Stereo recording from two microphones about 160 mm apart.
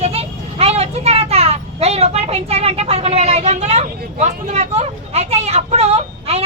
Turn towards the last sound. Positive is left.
turn(degrees=-40)  # may be behind; listen again after turning